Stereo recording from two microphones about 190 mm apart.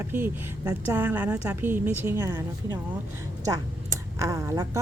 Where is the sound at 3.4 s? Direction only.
15° right (ahead or behind).